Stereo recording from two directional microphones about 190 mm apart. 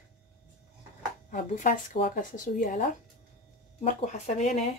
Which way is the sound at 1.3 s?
45° left (ahead or behind).